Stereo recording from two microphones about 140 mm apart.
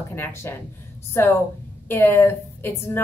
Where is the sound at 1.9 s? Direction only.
15° left (ahead or behind).